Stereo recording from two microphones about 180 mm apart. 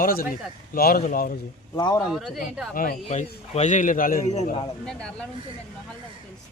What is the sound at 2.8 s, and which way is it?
Speech, 45° left (ahead or behind).